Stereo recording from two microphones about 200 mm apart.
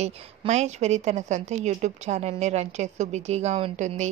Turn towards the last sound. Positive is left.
turn(degrees=-35)  # may be behind; listen again after turning